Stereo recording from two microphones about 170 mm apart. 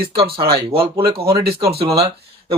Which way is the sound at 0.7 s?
30° right (ahead or behind).